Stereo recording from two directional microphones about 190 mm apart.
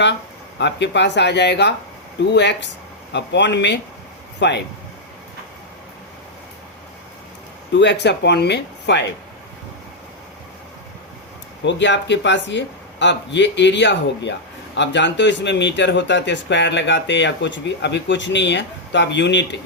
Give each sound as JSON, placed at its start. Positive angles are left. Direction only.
{"t": 0.6, "sound": "speech", "side_deg": 65}
{"t": 7.7, "sound": "speech", "side_deg": 70}
{"t": 11.6, "sound": "speech", "side_deg": 70}